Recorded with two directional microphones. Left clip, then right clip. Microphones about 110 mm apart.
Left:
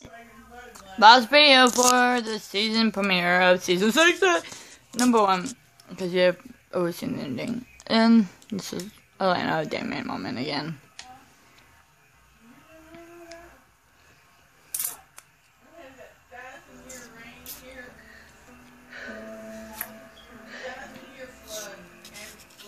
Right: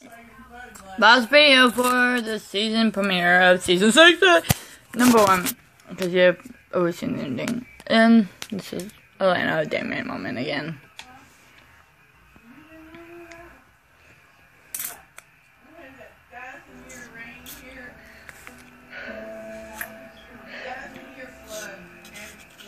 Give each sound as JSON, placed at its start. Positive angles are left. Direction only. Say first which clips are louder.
{"t": 0.7, "sound": "speech", "louder": "left 2 dB", "side_deg": 20}
{"t": 5.9, "sound": "speech", "louder": "right 4 dB", "side_deg": 30}
{"t": 7.8, "sound": "speech", "louder": "right 4 dB", "side_deg": 40}
{"t": 14.7, "sound": "coin", "louder": "even", "side_deg": 50}
{"t": 21.5, "sound": "a sound", "louder": "right 2 dB", "side_deg": 50}